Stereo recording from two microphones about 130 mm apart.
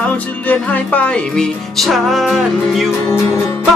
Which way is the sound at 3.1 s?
20° left (ahead or behind).